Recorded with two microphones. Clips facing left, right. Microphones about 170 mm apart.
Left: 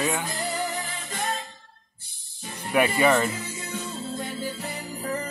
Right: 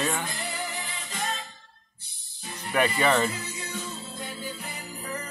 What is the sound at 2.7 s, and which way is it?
Speech, 10° left (ahead or behind).